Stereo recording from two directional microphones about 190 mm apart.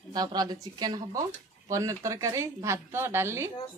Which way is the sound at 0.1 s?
20° right (ahead or behind).